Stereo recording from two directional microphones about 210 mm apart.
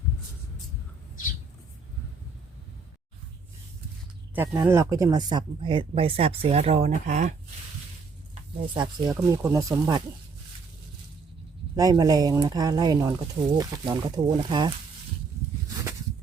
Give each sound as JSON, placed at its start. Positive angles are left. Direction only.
{"t": 4.4, "sound": "speech", "side_deg": -10}
{"t": 8.7, "sound": "speech", "side_deg": -20}
{"t": 11.8, "sound": "speech", "side_deg": -20}